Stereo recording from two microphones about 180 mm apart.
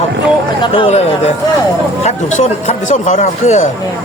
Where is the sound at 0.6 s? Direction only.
30° left (ahead or behind).